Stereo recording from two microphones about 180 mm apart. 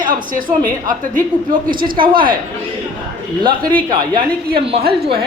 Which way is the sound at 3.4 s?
25° right (ahead or behind).